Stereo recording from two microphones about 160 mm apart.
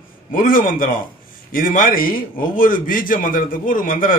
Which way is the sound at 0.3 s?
55° left (ahead or behind).